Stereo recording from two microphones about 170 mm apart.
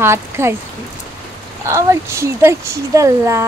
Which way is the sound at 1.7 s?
15° right (ahead or behind).